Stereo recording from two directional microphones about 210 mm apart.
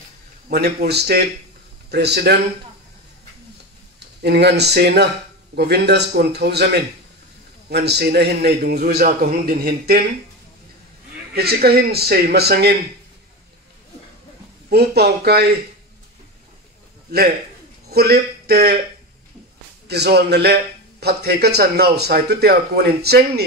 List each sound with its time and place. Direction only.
0.5 s a man's voice: 50° right (ahead or behind)
4.2 s a man's voice: 50° right (ahead or behind)
11.3 s a man's voice: 50° right (ahead or behind)
14.7 s a man's voice: 50° right (ahead or behind)
17.8 s speech: 50° right (ahead or behind)
19.9 s a man's voice: 50° right (ahead or behind)